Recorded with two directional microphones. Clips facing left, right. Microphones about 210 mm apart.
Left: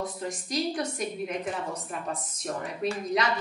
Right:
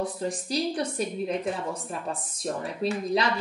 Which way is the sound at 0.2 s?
35° right (ahead or behind).